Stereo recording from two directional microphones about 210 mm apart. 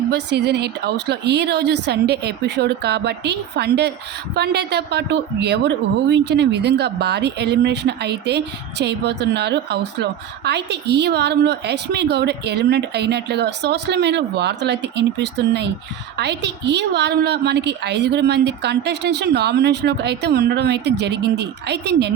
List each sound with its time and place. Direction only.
0.1 s a woman's voice: 55° right (ahead or behind)